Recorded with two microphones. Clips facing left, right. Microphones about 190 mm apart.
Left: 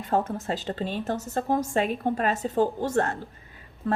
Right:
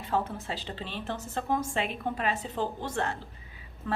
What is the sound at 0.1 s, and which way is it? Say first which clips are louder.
A woman's voice: left 5 dB; 45° left (ahead or behind).